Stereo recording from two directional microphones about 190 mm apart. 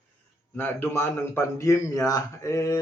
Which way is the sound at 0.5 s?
10° left (ahead or behind).